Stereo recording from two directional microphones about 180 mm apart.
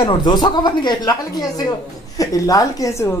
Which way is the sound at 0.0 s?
25° left (ahead or behind).